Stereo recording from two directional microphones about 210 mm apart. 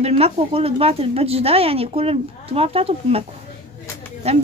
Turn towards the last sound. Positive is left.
turn(degrees=-30)  # may be behind; listen again after turning